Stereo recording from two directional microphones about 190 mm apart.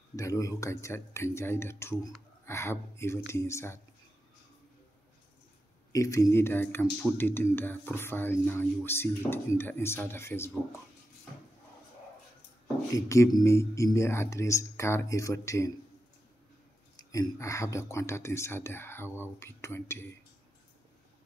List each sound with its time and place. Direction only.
0.1 s speech: 15° left (ahead or behind)
5.9 s speech: 15° left (ahead or behind)
12.9 s speech: 15° left (ahead or behind)
17.1 s speech: 15° left (ahead or behind)